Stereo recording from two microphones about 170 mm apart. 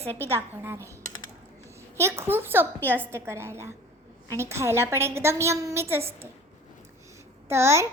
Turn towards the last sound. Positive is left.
turn(degrees=-15)  # may be behind; listen again after turning